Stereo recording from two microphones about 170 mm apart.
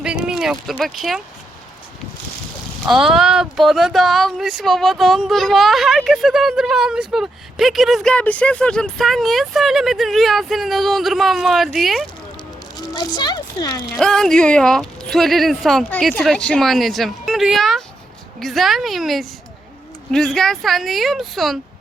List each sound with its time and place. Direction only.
0.0 s speech: 5° right (ahead or behind)
2.8 s speech: centre (ahead or behind)
12.7 s a child's voice: 25° left (ahead or behind)
13.9 s speech: 5° left (ahead or behind)